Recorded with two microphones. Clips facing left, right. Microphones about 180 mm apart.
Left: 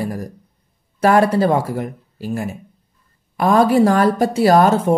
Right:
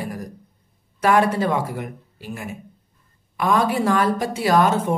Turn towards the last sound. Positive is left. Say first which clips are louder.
# left 5 dB
turn(degrees=35)  # may be behind; listen again after turning